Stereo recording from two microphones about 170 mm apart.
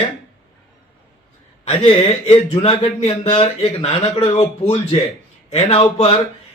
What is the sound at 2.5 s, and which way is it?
Speech, 35° left (ahead or behind).